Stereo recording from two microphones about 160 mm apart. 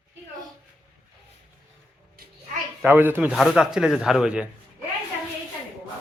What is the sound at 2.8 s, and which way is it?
Speech, 10° right (ahead or behind).